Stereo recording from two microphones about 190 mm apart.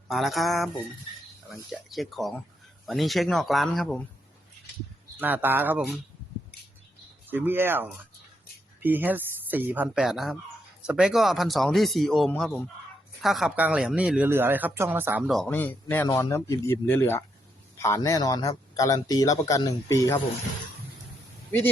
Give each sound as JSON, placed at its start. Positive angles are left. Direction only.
{"t": 0.1, "sound": "speech", "side_deg": 0}
{"t": 5.2, "sound": "speech", "side_deg": -10}
{"t": 7.3, "sound": "speech", "side_deg": -10}
{"t": 15.3, "sound": "a man's voice", "side_deg": 5}